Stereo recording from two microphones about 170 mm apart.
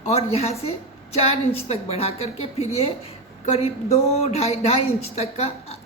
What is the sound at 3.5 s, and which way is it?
A woman's voice, 40° left (ahead or behind).